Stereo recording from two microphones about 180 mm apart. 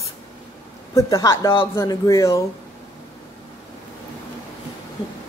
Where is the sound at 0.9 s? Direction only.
20° left (ahead or behind).